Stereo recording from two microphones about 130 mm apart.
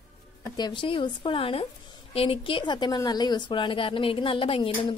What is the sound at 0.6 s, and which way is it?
A woman's voice, 35° left (ahead or behind).